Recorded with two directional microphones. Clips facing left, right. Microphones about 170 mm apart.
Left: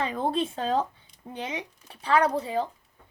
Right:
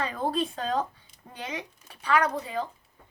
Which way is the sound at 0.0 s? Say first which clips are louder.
Left 1 dB; 20° left (ahead or behind).